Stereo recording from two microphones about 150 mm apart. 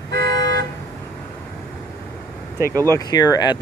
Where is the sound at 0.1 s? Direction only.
90° right.